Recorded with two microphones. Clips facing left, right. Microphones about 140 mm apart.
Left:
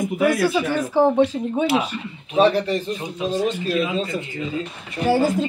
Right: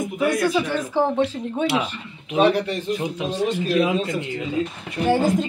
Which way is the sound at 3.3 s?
Centre (ahead or behind).